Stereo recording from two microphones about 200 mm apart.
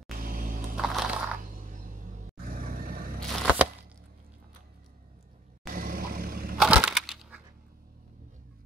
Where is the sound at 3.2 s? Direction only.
5° right (ahead or behind).